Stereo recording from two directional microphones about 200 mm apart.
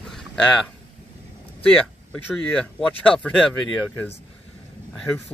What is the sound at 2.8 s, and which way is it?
Speech, 5° left (ahead or behind).